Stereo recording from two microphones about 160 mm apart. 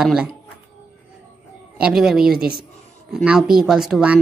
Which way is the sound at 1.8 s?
5° right (ahead or behind).